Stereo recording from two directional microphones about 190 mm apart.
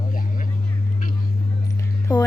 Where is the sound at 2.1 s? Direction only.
20° left (ahead or behind).